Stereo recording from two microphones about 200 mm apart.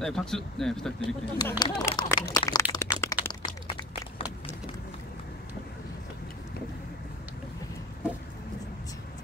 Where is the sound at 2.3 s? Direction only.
15° left (ahead or behind).